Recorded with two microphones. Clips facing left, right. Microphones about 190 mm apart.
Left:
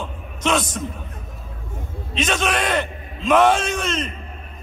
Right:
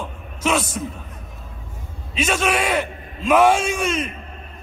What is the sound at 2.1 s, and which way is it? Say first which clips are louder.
Speech: right 1 dB; 5° right (ahead or behind).